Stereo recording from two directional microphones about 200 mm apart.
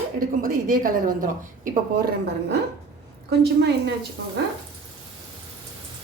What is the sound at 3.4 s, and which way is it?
Speech, 55° right (ahead or behind).